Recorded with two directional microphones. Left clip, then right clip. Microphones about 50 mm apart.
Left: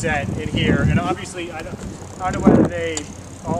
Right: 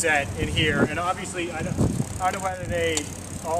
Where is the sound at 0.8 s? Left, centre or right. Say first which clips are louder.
Left 2 dB; left.